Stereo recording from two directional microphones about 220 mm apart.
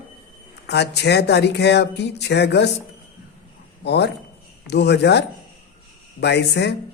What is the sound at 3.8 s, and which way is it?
A man's voice, 50° left (ahead or behind).